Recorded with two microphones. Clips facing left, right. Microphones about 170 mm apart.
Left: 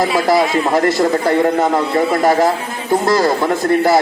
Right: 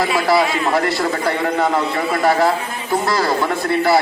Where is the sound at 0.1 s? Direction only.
45° left (ahead or behind).